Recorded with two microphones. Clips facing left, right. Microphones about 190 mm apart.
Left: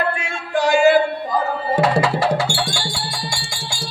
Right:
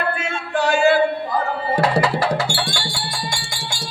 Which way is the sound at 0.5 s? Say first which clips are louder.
Left 2 dB; 15° left (ahead or behind).